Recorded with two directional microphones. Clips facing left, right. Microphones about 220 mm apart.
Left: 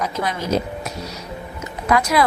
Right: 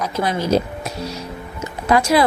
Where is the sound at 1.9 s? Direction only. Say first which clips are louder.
Right 3 dB; 30° right (ahead or behind).